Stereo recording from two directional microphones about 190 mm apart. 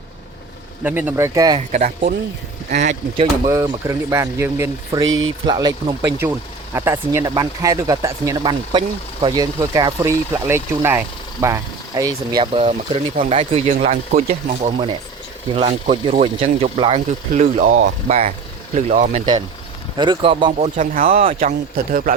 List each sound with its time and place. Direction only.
0.9 s speech: 10° right (ahead or behind)
1.5 s speech: 40° right (ahead or behind)
3.4 s speech: 15° right (ahead or behind)
5.0 s speech: 90° right
5.5 s speech: 20° right (ahead or behind); by 19.3 s 40° right (ahead or behind)
20.0 s speech: 25° right (ahead or behind)
20.7 s speech: 45° right (ahead or behind)